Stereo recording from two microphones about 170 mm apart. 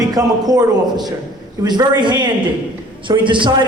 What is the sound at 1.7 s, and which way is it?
Speech, 25° right (ahead or behind).